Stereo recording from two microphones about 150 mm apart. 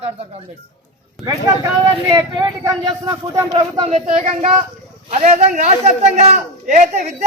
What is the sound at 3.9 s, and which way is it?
A man's voice, 45° right (ahead or behind).